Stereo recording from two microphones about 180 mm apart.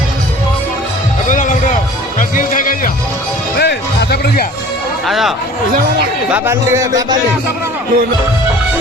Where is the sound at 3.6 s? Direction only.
60° left (ahead or behind).